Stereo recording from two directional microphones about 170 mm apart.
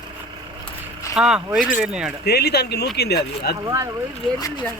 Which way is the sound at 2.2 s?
70° left (ahead or behind).